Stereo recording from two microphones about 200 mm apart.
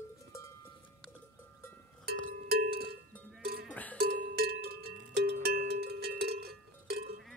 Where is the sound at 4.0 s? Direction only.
50° right (ahead or behind).